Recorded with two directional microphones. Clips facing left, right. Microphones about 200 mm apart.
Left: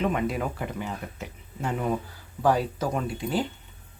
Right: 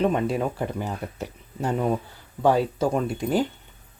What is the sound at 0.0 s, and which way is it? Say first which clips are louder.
Speech: right 4 dB; 30° right (ahead or behind).